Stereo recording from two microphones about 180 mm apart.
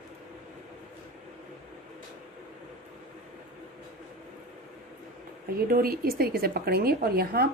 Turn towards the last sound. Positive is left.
turn(degrees=-60)  # may be behind; listen again after turning